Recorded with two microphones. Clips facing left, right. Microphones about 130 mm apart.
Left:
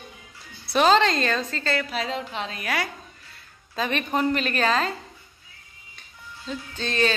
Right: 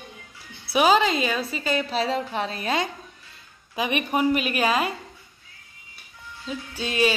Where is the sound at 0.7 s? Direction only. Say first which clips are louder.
Even; 10° right (ahead or behind).